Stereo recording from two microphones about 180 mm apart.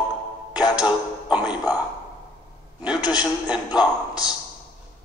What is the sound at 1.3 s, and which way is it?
Speech, 5° right (ahead or behind).